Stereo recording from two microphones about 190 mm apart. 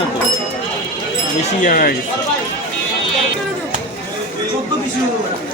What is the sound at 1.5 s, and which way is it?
Speech, 45° left (ahead or behind).